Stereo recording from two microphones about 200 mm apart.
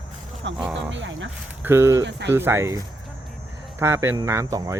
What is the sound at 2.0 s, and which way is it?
Speech, 60° right (ahead or behind).